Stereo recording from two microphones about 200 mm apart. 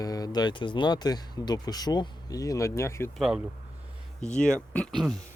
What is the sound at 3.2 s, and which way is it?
Speech, 5° right (ahead or behind).